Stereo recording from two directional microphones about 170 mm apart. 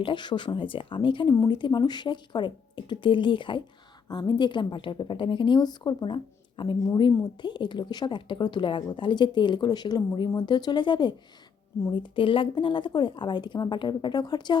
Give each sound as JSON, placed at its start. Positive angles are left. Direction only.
{"t": 0.0, "sound": "a woman's voice", "side_deg": 25}